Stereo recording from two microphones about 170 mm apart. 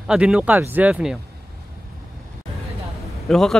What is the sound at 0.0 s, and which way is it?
Speech, 5° right (ahead or behind).